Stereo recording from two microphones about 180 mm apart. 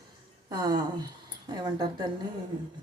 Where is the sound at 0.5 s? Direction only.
25° right (ahead or behind).